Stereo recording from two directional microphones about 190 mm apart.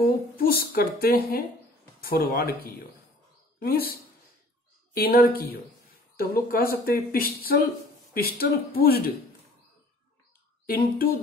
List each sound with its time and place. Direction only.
0.4 s speech: 50° left (ahead or behind)
4.9 s speech: 50° left (ahead or behind)
10.7 s speech: 50° left (ahead or behind)